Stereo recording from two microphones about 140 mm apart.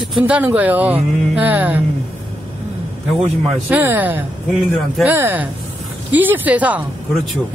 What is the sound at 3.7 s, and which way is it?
A woman's voice, 15° right (ahead or behind).